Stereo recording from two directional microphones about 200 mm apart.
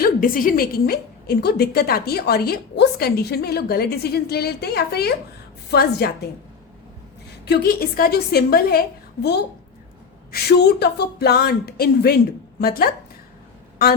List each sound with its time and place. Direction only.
0.0 s a woman's voice: 45° left (ahead or behind)
7.4 s a woman's voice: 50° left (ahead or behind)
10.3 s a woman's voice: 50° left (ahead or behind)